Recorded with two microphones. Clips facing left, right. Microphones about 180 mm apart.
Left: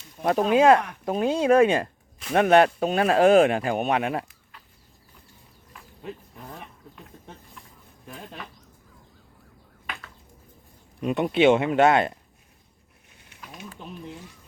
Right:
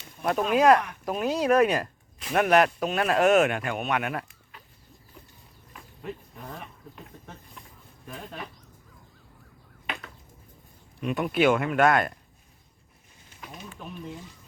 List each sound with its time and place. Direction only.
0.2 s speech: 30° left (ahead or behind)
11.0 s speech: 25° left (ahead or behind)
13.3 s a sound: 65° left (ahead or behind)